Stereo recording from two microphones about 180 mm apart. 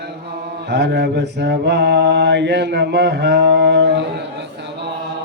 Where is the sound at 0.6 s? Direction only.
70° right (ahead or behind).